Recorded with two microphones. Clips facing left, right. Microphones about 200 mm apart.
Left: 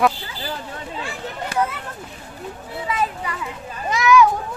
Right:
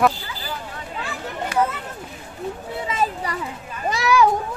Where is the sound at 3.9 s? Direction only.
35° right (ahead or behind).